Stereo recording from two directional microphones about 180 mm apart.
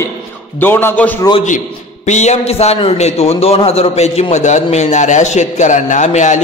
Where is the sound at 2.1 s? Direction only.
40° left (ahead or behind).